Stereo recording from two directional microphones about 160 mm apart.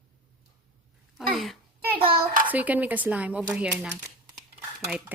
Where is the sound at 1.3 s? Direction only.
Centre (ahead or behind).